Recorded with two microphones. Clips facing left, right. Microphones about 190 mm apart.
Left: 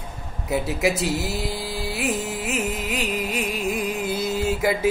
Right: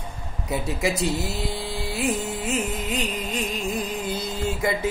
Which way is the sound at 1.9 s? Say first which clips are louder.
Right 1 dB; 5° left (ahead or behind).